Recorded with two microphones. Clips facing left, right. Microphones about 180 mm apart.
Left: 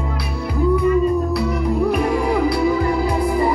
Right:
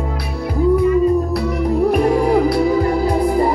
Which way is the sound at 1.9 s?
45° right (ahead or behind).